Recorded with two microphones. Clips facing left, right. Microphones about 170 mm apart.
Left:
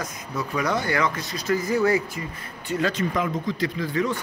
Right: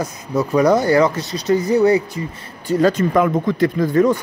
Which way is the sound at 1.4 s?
20° right (ahead or behind).